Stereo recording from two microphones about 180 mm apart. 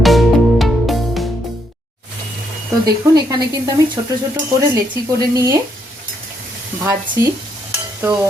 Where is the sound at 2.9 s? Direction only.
20° right (ahead or behind).